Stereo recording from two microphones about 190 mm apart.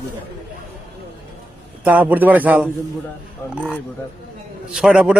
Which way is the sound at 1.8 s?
10° right (ahead or behind).